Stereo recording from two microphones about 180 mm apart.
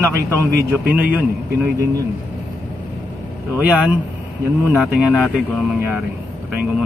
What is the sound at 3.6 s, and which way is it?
Speech, 5° right (ahead or behind).